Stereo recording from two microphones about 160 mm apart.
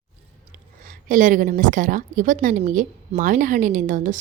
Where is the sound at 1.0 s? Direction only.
55° right (ahead or behind).